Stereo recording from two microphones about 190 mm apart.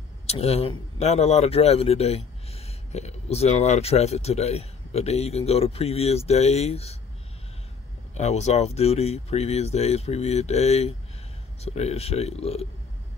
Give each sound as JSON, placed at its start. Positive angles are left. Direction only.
{"t": 0.3, "sound": "speech", "side_deg": 35}
{"t": 8.2, "sound": "speech", "side_deg": 35}